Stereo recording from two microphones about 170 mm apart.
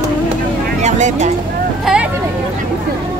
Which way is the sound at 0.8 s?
45° right (ahead or behind).